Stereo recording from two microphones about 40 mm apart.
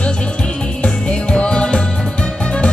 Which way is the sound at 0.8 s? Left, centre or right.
Left.